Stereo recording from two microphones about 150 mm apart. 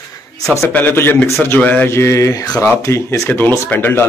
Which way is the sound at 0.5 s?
10° left (ahead or behind).